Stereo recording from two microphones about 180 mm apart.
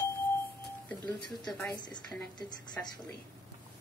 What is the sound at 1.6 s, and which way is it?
A woman's voice, 15° left (ahead or behind).